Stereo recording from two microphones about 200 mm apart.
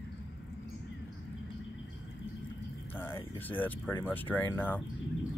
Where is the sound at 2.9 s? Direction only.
10° left (ahead or behind).